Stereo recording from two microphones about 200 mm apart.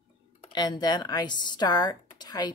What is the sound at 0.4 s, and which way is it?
Speech, 20° left (ahead or behind).